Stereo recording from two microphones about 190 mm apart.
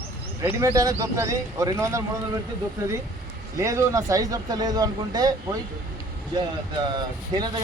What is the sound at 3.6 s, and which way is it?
Speech, 15° right (ahead or behind).